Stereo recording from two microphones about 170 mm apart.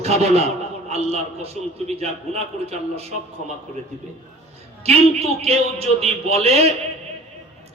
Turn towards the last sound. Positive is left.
turn(degrees=-35)  # may be behind; listen again after turning